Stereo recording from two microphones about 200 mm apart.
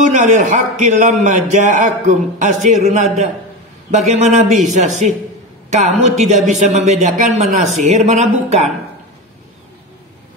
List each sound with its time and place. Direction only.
0.0 s a man's voice: 40° right (ahead or behind)